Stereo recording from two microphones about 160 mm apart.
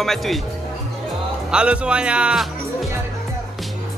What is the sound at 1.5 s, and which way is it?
Speech, 5° right (ahead or behind).